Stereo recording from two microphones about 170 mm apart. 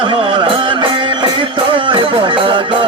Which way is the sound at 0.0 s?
30° right (ahead or behind).